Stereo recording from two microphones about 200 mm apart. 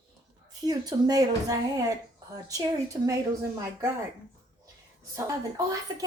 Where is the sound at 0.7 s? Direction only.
20° right (ahead or behind).